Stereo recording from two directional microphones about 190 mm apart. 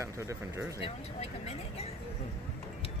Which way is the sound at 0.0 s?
15° right (ahead or behind).